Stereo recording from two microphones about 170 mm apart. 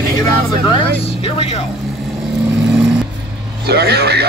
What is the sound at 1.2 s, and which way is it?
Speech, 35° left (ahead or behind).